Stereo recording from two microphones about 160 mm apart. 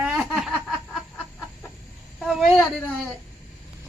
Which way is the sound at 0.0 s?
5° right (ahead or behind).